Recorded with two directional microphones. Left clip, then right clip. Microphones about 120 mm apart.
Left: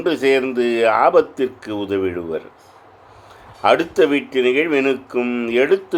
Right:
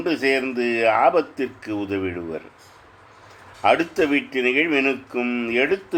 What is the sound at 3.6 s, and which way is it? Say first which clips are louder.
Speech: left 4 dB; 30° left (ahead or behind).